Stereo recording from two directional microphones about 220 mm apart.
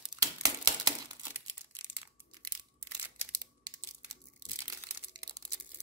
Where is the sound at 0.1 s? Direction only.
15° right (ahead or behind).